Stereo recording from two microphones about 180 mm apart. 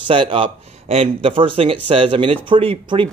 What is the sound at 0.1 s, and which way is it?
Speech, 30° right (ahead or behind).